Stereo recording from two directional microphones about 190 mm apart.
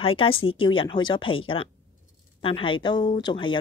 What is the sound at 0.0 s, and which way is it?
Speech, 30° left (ahead or behind).